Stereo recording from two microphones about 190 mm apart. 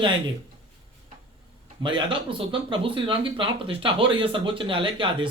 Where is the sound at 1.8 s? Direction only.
25° right (ahead or behind).